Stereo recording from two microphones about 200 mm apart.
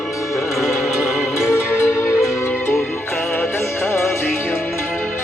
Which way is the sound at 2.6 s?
10° left (ahead or behind).